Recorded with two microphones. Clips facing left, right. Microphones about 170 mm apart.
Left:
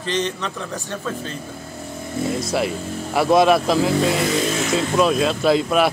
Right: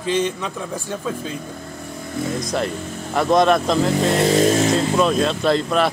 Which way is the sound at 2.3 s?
5° left (ahead or behind).